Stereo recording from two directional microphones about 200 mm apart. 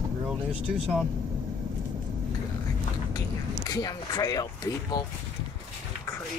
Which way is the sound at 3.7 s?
20° left (ahead or behind).